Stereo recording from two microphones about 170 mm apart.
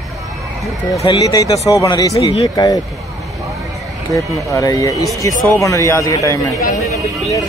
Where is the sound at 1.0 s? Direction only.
20° left (ahead or behind).